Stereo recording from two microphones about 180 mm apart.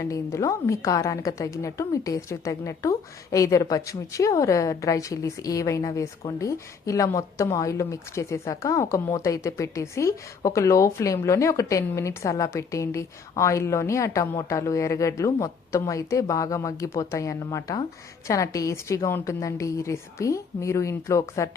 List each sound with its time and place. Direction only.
0.0 s a woman's voice: 15° left (ahead or behind)